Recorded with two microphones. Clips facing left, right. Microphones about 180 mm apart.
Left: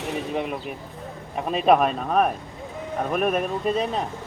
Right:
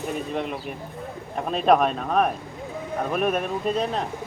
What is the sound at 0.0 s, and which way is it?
Speech, 90° left.